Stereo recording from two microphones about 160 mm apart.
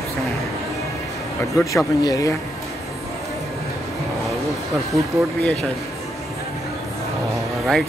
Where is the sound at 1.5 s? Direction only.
20° left (ahead or behind).